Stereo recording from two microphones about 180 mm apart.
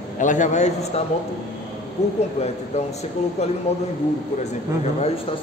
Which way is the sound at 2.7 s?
35° left (ahead or behind).